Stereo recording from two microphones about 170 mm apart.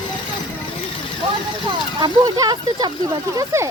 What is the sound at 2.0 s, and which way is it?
Speech, 20° right (ahead or behind).